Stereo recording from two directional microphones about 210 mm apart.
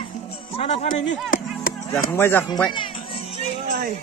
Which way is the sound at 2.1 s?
10° left (ahead or behind).